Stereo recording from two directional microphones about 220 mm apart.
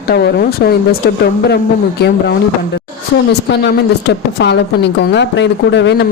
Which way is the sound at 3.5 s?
50° left (ahead or behind).